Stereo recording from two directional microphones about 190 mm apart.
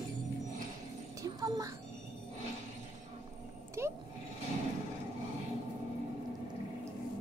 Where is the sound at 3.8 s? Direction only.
15° right (ahead or behind).